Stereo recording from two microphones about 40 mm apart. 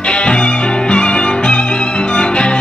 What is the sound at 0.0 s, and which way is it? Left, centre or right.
Music, left.